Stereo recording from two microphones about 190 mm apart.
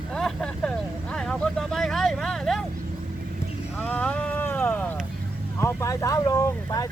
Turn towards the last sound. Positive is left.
turn(degrees=20)  # may be behind; listen again after turning